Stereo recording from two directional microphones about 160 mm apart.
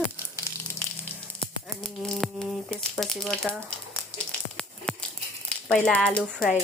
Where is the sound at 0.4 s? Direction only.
15° left (ahead or behind).